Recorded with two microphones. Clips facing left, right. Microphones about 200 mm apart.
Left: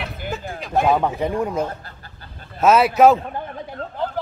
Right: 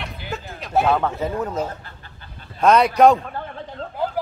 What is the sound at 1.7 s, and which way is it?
Speech, 40° left (ahead or behind).